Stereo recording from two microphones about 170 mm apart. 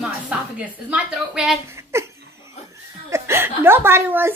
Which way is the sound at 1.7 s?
15° right (ahead or behind).